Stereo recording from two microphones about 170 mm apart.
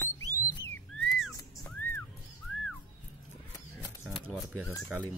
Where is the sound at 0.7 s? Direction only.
5° left (ahead or behind).